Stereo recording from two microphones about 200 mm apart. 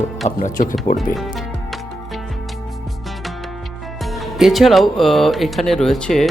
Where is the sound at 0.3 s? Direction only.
40° left (ahead or behind).